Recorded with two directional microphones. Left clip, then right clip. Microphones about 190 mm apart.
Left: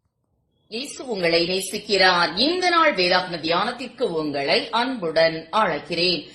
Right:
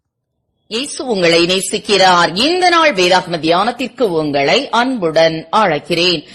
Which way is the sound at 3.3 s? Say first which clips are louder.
Right 9 dB; 40° right (ahead or behind).